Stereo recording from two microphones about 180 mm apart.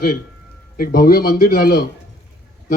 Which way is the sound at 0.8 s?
55° left (ahead or behind).